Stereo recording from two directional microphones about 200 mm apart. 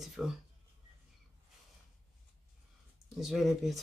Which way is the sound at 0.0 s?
Centre (ahead or behind).